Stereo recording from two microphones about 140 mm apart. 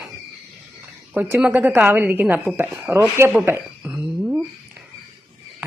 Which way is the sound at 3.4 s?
15° right (ahead or behind).